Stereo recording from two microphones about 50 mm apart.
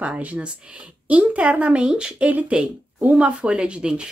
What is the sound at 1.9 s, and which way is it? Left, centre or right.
Speech, centre.